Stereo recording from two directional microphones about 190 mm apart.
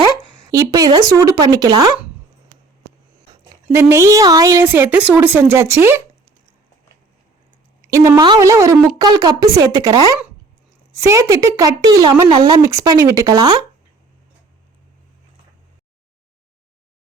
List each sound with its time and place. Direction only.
0.5 s speech: 20° right (ahead or behind)
3.8 s a woman's voice: 15° right (ahead or behind)
7.9 s a woman's voice: 15° right (ahead or behind)